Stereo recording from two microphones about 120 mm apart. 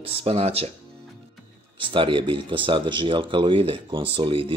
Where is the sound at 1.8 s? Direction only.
45° right (ahead or behind).